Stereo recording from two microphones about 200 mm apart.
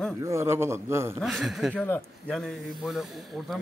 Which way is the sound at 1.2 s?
Centre (ahead or behind).